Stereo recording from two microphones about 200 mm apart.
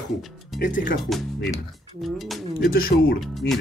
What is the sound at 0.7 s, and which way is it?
Speech, 40° left (ahead or behind).